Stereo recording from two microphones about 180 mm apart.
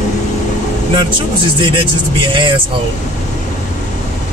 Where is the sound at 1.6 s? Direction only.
25° right (ahead or behind).